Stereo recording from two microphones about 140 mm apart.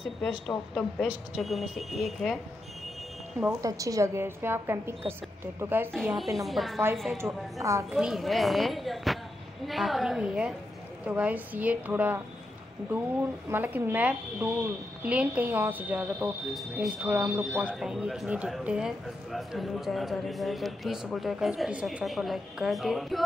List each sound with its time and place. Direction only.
0.5 s speech: 5° left (ahead or behind)
3.4 s speech: 25° right (ahead or behind)
6.1 s speech: centre (ahead or behind)
7.5 s a woman's voice: 20° right (ahead or behind)
7.9 s speech: 5° right (ahead or behind)